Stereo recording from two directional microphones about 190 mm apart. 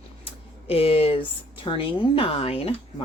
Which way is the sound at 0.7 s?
30° left (ahead or behind).